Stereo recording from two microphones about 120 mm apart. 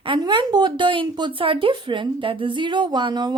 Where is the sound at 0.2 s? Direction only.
40° right (ahead or behind).